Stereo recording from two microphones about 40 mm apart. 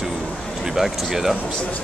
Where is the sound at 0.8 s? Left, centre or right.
Centre.